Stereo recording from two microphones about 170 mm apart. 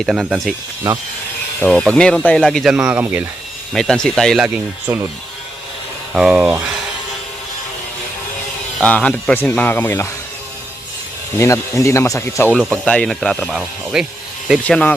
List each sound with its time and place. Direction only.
0.0 s speech: 5° right (ahead or behind)
1.6 s speech: 5° left (ahead or behind); by 3.2 s 10° right (ahead or behind)
3.7 s speech: 5° left (ahead or behind)
6.1 s speech: 5° right (ahead or behind)
8.8 s speech: 5° left (ahead or behind)
11.3 s speech: 20° left (ahead or behind); by 14.6 s 5° right (ahead or behind)
14.6 s speech: 5° left (ahead or behind)